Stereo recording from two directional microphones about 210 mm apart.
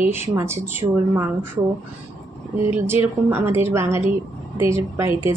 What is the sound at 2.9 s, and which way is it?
A woman's voice, 10° right (ahead or behind).